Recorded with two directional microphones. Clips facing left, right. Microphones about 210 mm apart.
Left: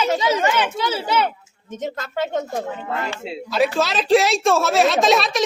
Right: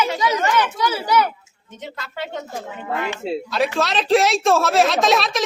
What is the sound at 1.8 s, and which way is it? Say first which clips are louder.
Speech: left 6 dB; 45° left (ahead or behind).